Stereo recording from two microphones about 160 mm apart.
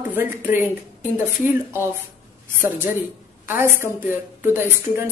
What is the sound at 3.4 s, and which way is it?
A woman's voice, 15° right (ahead or behind).